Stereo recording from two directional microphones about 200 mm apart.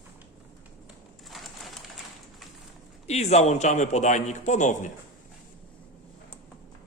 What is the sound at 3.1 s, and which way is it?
A man's voice, 35° left (ahead or behind).